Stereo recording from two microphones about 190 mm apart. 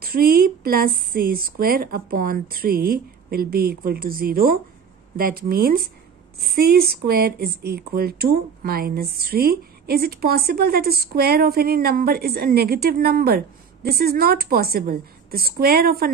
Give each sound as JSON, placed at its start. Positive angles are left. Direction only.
{"t": 0.0, "sound": "speech", "side_deg": -50}